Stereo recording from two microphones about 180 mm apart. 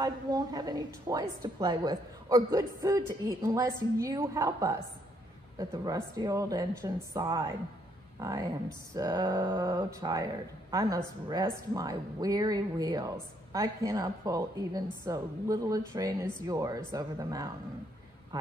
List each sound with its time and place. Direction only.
0.0 s a woman's voice: 20° right (ahead or behind)